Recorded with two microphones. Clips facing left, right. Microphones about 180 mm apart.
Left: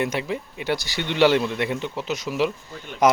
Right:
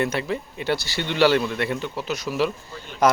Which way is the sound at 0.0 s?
15° left (ahead or behind).